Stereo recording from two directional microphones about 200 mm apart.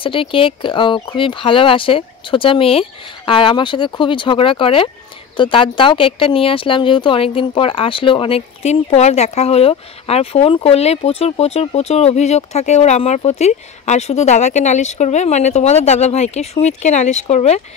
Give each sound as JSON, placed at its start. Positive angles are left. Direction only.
{"t": 0.0, "sound": "speech", "side_deg": 25}